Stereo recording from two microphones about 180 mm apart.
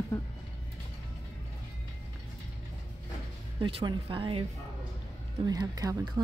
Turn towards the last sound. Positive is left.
turn(degrees=-20)  # may be behind; listen again after turning